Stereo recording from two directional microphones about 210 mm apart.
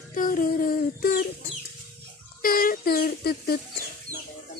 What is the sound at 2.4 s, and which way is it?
Speech, 45° left (ahead or behind).